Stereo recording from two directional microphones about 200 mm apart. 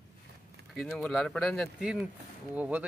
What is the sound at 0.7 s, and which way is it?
Speech, centre (ahead or behind).